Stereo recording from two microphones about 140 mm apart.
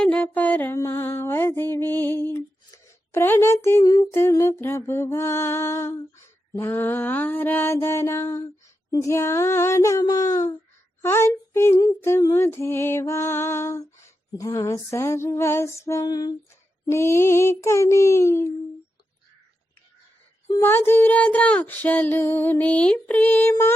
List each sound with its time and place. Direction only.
0.0 s mantra: 10° left (ahead or behind)
2.2 s speech: 15° left (ahead or behind)
8.9 s female singing: 20° left (ahead or behind)
11.0 s speech: 20° left (ahead or behind)
12.0 s female singing: 20° left (ahead or behind)
20.6 s speech: 15° left (ahead or behind)